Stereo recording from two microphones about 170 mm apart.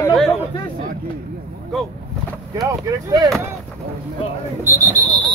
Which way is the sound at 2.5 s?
20° right (ahead or behind).